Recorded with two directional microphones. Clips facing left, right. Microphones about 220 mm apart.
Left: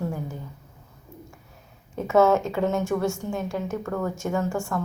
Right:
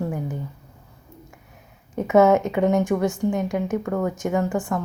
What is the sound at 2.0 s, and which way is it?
Speech, 20° right (ahead or behind).